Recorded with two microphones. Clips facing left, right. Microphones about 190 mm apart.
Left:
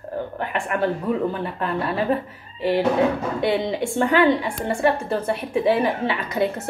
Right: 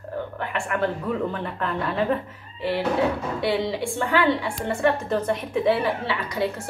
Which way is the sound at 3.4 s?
20° left (ahead or behind).